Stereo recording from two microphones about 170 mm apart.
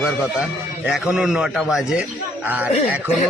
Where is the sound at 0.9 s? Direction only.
5° right (ahead or behind).